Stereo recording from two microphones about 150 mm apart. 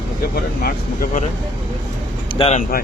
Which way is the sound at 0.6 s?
70° left (ahead or behind).